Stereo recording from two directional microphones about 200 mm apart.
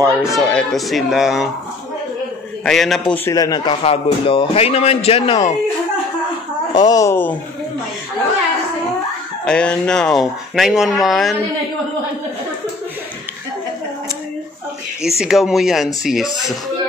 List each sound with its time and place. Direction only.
0.2 s speech: centre (ahead or behind)
2.6 s speech: centre (ahead or behind)
3.3 s a man's voice: 20° left (ahead or behind)
6.7 s speech: 20° left (ahead or behind)
9.4 s speech: 5° left (ahead or behind)
15.0 s speech: centre (ahead or behind)